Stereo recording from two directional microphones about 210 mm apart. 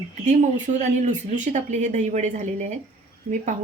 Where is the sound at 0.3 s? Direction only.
35° right (ahead or behind).